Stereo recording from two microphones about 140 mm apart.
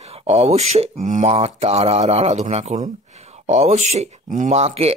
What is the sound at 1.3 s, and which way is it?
Speech, 45° right (ahead or behind).